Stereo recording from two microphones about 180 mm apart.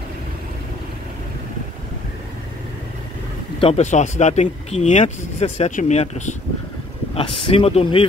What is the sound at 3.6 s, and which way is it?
Speech, 40° left (ahead or behind).